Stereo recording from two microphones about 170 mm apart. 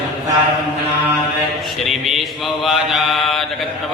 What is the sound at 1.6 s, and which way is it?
Mantra, centre (ahead or behind).